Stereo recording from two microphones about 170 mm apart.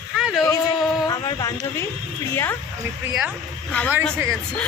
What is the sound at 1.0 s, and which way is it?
Speech, 20° left (ahead or behind).